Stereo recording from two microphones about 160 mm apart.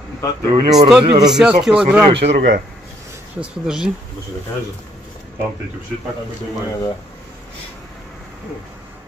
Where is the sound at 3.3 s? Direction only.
5° right (ahead or behind).